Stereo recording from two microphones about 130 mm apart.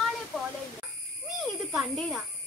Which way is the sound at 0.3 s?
Centre (ahead or behind).